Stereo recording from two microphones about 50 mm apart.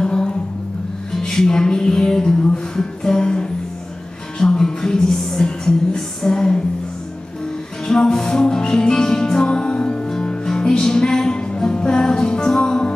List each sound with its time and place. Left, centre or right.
0.0 s music: centre
7.8 s music: centre